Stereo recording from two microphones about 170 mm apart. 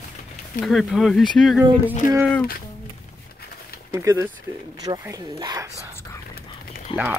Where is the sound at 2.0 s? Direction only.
50° left (ahead or behind).